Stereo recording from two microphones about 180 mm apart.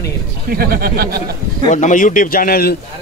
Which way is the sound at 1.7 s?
45° left (ahead or behind).